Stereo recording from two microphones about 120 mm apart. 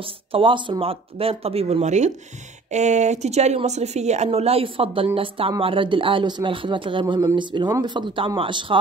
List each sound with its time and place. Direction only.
0.0 s speech: 45° right (ahead or behind)